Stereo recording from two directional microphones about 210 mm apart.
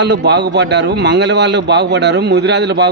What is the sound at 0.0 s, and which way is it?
A man's voice, 55° right (ahead or behind).